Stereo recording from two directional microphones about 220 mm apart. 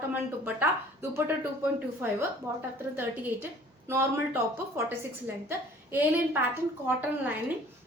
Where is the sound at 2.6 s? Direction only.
10° right (ahead or behind).